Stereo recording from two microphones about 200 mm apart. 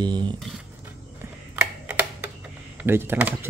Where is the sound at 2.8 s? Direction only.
10° right (ahead or behind).